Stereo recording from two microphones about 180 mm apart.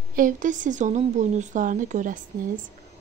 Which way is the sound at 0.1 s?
45° right (ahead or behind).